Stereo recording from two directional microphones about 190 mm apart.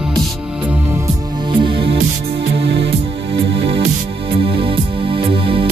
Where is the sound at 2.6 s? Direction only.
60° right (ahead or behind).